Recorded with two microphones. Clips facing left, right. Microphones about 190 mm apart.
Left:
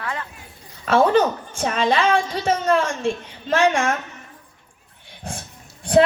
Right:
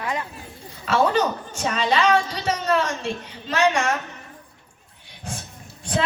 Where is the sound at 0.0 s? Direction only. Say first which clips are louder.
Right 2 dB; 15° right (ahead or behind).